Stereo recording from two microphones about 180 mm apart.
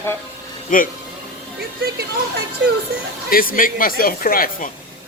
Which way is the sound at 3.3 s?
55° left (ahead or behind).